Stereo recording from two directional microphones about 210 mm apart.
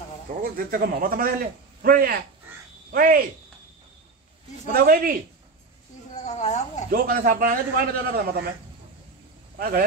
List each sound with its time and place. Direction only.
0.4 s a man's voice: 40° right (ahead or behind)
4.7 s a man's voice: 45° right (ahead or behind)
6.1 s snake: 35° left (ahead or behind)
6.9 s a man's voice: 45° right (ahead or behind)
9.6 s speech: 45° right (ahead or behind)